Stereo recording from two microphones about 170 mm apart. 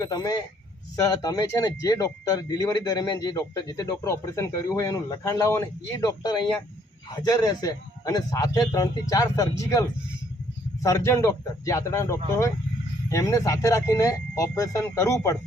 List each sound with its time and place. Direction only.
0.0 s speech: 20° left (ahead or behind)